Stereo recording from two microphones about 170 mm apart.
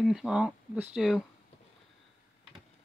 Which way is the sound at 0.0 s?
Centre (ahead or behind).